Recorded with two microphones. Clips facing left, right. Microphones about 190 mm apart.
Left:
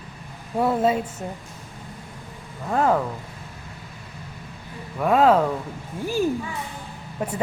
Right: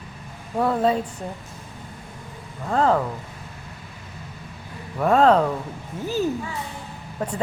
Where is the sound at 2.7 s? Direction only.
10° left (ahead or behind).